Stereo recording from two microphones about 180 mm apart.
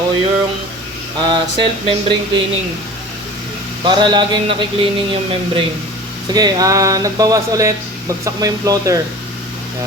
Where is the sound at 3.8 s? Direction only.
25° right (ahead or behind).